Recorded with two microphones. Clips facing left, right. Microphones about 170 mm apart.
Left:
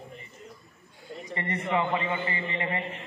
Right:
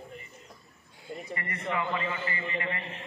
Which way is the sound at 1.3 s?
25° left (ahead or behind).